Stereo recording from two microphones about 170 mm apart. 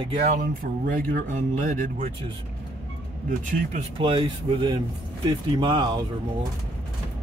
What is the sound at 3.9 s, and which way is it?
Speech, 30° right (ahead or behind).